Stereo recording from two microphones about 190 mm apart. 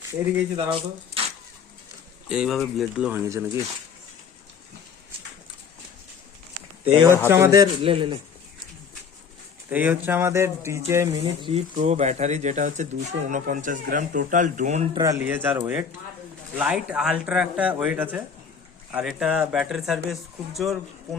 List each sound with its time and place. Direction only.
0.7 s speech: 30° right (ahead or behind)
2.3 s speech: centre (ahead or behind)
3.2 s speech: 15° right (ahead or behind)
6.9 s speech: 20° right (ahead or behind)
7.8 s speech: 30° right (ahead or behind)
9.6 s speech: 10° right (ahead or behind)
11.4 s speech: 35° right (ahead or behind)
14.9 s speech: 20° right (ahead or behind); by 20.7 s centre (ahead or behind)